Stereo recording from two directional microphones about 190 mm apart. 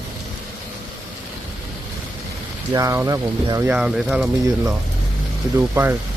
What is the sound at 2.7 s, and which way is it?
Speech, 15° right (ahead or behind).